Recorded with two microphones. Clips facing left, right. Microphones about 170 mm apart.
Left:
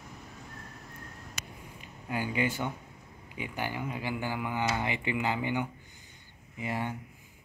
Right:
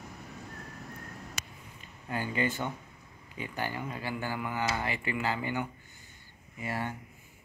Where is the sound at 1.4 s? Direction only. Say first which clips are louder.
Even; 75° right (ahead or behind).